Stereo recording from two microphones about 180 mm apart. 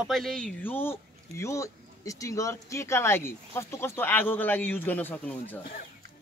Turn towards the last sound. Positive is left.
turn(degrees=10)  # may be behind; listen again after turning